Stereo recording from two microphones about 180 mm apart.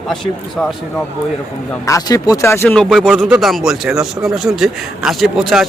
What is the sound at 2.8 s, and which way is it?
Speech, centre (ahead or behind).